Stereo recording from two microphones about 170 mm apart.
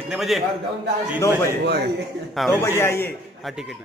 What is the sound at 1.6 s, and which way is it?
Speech, 75° right (ahead or behind).